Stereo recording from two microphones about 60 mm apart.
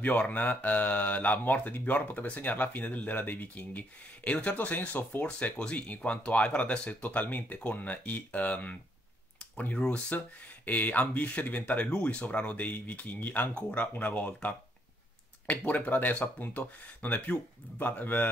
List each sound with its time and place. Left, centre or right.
0.0 s speech: left
9.4 s a sound: left
9.8 s speech: left